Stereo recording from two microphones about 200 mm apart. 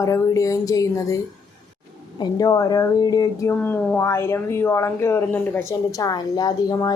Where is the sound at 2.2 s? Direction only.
15° left (ahead or behind).